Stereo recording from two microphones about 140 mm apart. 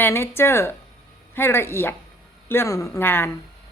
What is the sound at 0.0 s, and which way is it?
A woman's voice, 15° left (ahead or behind).